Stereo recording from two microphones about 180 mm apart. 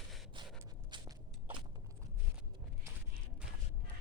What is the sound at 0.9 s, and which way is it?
Walk, 25° right (ahead or behind).